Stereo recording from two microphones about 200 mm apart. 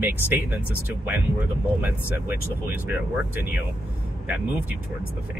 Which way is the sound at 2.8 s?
10° right (ahead or behind).